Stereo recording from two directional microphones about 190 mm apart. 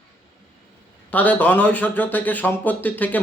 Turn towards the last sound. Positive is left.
turn(degrees=10)  # may be behind; listen again after turning